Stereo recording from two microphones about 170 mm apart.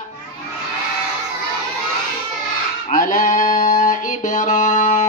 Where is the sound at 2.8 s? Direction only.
50° left (ahead or behind).